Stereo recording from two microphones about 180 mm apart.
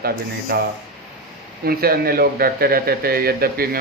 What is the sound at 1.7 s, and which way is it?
Speech, 55° right (ahead or behind).